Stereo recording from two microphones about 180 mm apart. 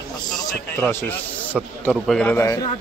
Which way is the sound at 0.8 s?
10° left (ahead or behind).